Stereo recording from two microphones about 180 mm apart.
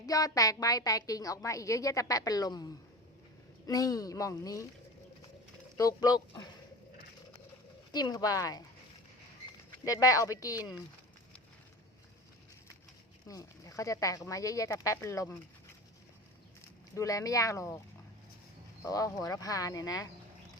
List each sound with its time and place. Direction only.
0.0 s a woman's voice: 20° left (ahead or behind)
3.7 s a woman's voice: 20° left (ahead or behind)
5.7 s a woman's voice: 20° left (ahead or behind)
7.9 s a woman's voice: 20° left (ahead or behind)
9.8 s a woman's voice: 20° left (ahead or behind)
13.2 s speech: 20° left (ahead or behind)
16.9 s speech: 20° left (ahead or behind)
18.8 s a woman's voice: 20° left (ahead or behind)